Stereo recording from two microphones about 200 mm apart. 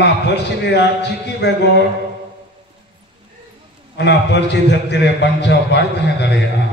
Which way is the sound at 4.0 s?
60° left (ahead or behind).